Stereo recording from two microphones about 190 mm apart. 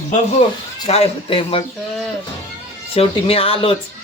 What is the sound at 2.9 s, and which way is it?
Speech, 30° left (ahead or behind).